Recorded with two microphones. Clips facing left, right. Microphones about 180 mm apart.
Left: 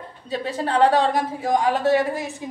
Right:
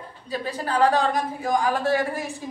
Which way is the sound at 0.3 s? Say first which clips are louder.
Left 3 dB; 25° left (ahead or behind).